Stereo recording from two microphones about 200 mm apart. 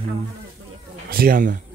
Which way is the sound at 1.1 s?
45° right (ahead or behind).